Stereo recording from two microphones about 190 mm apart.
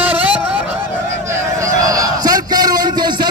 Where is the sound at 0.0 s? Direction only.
10° right (ahead or behind).